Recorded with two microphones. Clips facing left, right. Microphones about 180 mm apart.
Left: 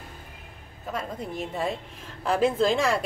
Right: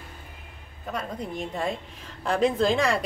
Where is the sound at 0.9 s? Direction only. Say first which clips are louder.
Even; 5° left (ahead or behind).